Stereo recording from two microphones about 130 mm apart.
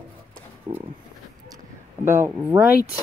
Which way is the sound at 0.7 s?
25° right (ahead or behind).